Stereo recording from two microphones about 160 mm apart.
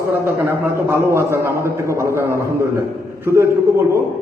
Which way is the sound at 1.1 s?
15° right (ahead or behind).